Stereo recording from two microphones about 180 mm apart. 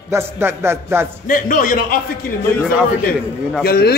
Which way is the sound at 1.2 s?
50° left (ahead or behind).